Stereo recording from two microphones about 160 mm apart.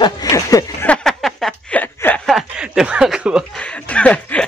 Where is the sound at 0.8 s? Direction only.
5° left (ahead or behind).